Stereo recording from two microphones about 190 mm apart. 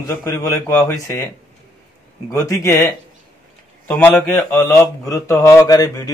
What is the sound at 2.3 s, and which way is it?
Speech, 15° left (ahead or behind).